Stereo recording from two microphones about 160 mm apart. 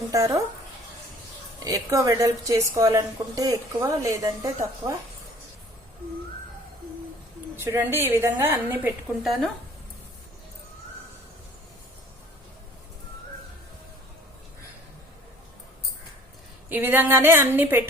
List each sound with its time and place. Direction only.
0.1 s a woman's voice: 20° right (ahead or behind)
1.5 s a woman's voice: 20° right (ahead or behind)
7.5 s a woman's voice: 15° right (ahead or behind)
9.2 s speech: centre (ahead or behind)
16.6 s a woman's voice: 10° right (ahead or behind)